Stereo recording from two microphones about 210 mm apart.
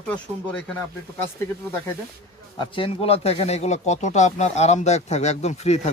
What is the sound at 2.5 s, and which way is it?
Speech, 25° left (ahead or behind).